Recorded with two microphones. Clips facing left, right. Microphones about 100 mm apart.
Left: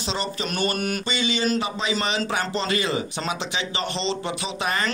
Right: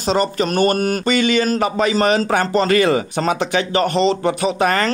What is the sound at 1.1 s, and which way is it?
A man's voice, 55° right (ahead or behind).